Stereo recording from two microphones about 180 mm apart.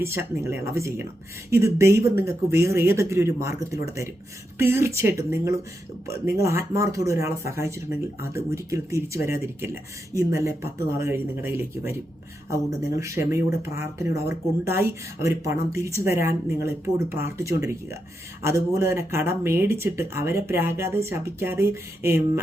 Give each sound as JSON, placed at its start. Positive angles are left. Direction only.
{"t": 0.0, "sound": "speech", "side_deg": -15}